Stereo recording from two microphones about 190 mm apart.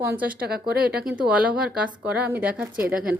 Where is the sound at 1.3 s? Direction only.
5° right (ahead or behind).